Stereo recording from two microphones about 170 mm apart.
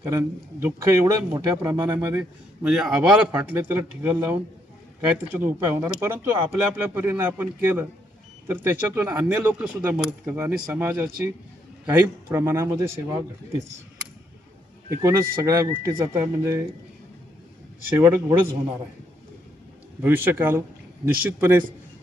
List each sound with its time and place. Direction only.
0.0 s speech: 15° right (ahead or behind)
2.6 s speech: 5° right (ahead or behind)
14.8 s speech: 15° right (ahead or behind)
17.9 s speech: 15° right (ahead or behind)
20.0 s speech: 10° right (ahead or behind)